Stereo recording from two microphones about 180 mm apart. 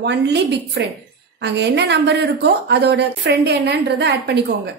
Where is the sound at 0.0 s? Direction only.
70° right (ahead or behind).